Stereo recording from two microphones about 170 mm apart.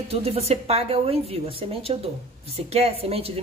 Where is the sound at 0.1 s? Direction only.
35° right (ahead or behind).